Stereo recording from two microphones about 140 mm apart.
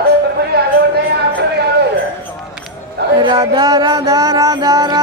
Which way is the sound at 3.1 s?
30° right (ahead or behind).